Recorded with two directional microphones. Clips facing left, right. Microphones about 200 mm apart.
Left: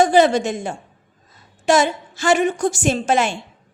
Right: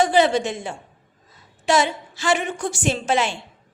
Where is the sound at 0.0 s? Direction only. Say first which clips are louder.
Left 3 dB; 45° left (ahead or behind).